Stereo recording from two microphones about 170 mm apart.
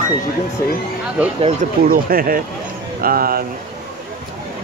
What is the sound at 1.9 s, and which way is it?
Speech, 60° right (ahead or behind).